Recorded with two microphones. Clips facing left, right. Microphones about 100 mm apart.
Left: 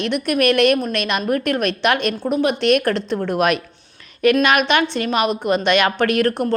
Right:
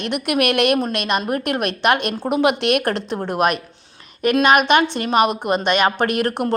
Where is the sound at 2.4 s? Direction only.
75° right (ahead or behind).